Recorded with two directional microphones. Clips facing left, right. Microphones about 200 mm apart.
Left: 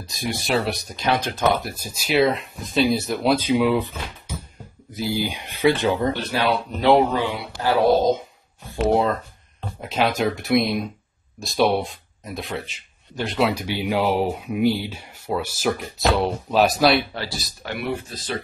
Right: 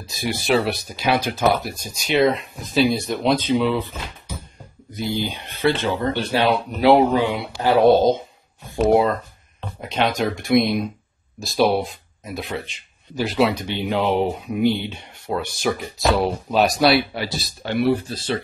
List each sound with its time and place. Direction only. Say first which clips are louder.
0.1 s speech: right 3 dB; centre (ahead or behind); by 3.9 s 15° left (ahead or behind)
4.9 s speech: even; 10° left (ahead or behind)
6.1 s speech: right 3 dB; 25° right (ahead or behind)
6.9 s speech: right 2 dB; 10° right (ahead or behind)
7.6 s speech: right 3 dB; 25° right (ahead or behind)
8.8 s speech: right 3 dB; 10° right (ahead or behind)
9.8 s speech: even; 5° left (ahead or behind)
17.1 s speech: right 3 dB; 15° right (ahead or behind)
17.4 s speech: right 8 dB; 30° right (ahead or behind)